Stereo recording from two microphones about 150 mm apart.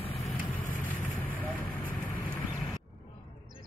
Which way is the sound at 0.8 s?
10° left (ahead or behind).